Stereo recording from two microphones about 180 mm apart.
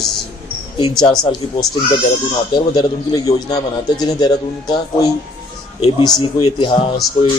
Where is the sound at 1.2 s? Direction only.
20° left (ahead or behind).